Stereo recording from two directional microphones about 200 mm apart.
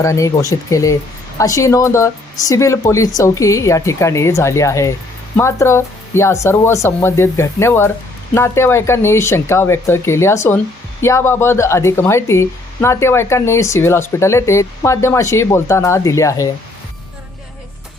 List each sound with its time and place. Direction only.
0.0 s speech: 15° left (ahead or behind)